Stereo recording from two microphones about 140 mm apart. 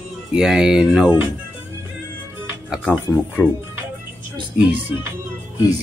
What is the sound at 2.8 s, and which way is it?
Speech, 10° left (ahead or behind).